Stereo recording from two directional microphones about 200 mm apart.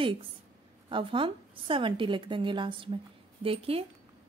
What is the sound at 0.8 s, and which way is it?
A woman's voice, 25° right (ahead or behind).